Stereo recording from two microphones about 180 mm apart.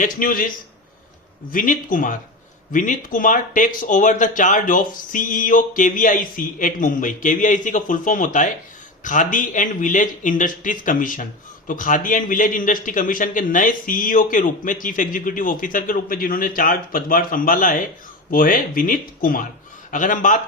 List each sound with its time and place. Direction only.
0.0 s a man's voice: 50° left (ahead or behind)
1.5 s a man's voice: 50° left (ahead or behind)